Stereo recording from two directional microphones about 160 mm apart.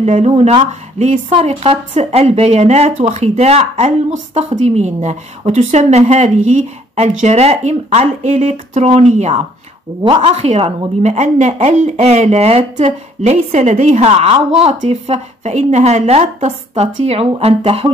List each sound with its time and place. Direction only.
0.0 s speech: 40° right (ahead or behind)
1.3 s a woman's voice: 40° right (ahead or behind)